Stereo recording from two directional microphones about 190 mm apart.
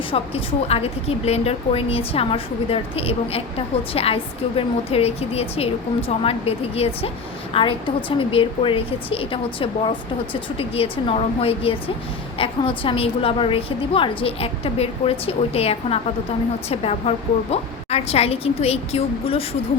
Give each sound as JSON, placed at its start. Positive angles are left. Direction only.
{"t": 0.1, "sound": "a woman's voice", "side_deg": 30}